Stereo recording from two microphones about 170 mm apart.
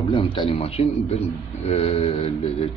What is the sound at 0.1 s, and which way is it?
Speech, 30° left (ahead or behind).